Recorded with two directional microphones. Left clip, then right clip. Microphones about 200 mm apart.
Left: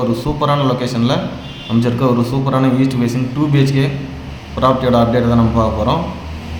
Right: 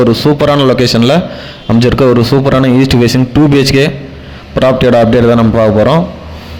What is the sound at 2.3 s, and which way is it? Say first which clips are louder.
Speech: right 11 dB; 35° right (ahead or behind).